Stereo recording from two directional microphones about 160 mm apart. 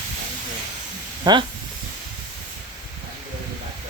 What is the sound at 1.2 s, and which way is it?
Speech, 30° right (ahead or behind).